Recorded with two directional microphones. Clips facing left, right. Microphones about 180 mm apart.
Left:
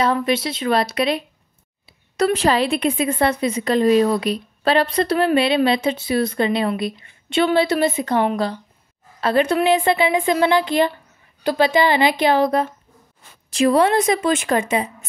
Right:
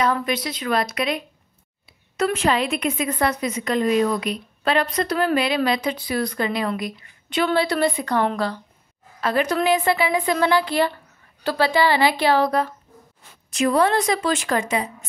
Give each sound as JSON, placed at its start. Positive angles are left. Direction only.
{"t": 0.0, "sound": "a woman's voice", "side_deg": 25}